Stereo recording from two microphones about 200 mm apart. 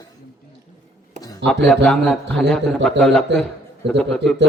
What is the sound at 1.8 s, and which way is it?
A man's voice, 5° left (ahead or behind).